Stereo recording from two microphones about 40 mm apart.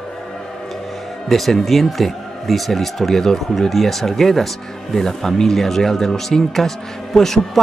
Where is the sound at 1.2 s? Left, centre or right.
Centre.